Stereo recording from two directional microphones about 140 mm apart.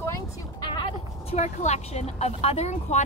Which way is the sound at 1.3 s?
55° left (ahead or behind).